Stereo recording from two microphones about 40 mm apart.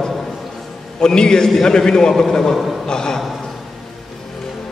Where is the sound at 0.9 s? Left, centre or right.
Centre.